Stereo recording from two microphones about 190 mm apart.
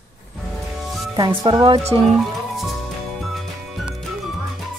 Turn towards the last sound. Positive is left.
turn(degrees=0)  # may be behind; listen again after turning